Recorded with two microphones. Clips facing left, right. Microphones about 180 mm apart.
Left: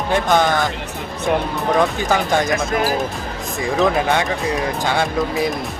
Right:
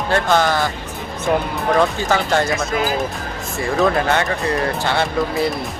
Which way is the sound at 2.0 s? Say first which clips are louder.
Even; 15° left (ahead or behind).